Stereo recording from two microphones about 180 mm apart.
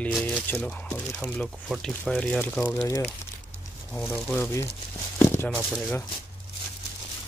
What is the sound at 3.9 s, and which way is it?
Speech, 10° left (ahead or behind).